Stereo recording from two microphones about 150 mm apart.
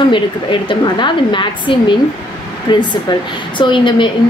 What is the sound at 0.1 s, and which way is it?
A woman's voice, 35° left (ahead or behind).